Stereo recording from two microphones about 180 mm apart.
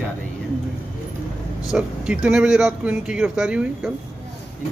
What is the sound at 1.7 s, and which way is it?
Speech, 5° right (ahead or behind).